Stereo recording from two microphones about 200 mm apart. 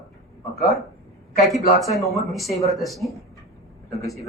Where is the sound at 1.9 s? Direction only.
Centre (ahead or behind).